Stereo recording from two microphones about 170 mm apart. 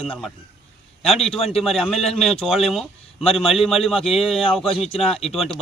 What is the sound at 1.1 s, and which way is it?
Speech, 35° left (ahead or behind).